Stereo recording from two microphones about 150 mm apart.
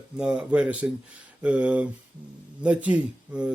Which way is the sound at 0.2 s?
5° right (ahead or behind).